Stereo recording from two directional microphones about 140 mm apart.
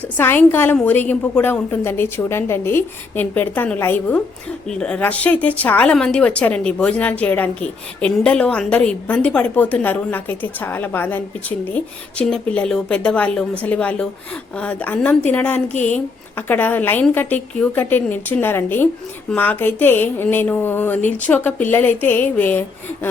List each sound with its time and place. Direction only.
0.2 s a woman's voice: 15° left (ahead or behind)